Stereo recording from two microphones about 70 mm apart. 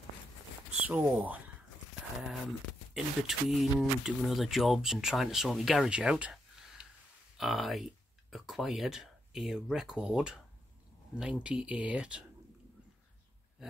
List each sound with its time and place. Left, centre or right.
0.8 s speech: right
2.2 s speech: centre
5.9 s speech: centre
6.8 s grunt: centre
7.3 s speech: centre